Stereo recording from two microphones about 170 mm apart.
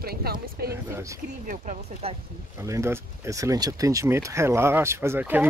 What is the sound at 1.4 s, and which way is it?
Speech, 50° right (ahead or behind).